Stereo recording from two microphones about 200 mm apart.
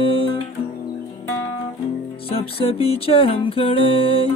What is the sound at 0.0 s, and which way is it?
Music, 25° left (ahead or behind).